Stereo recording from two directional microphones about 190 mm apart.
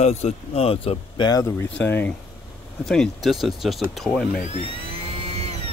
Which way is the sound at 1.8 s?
10° left (ahead or behind).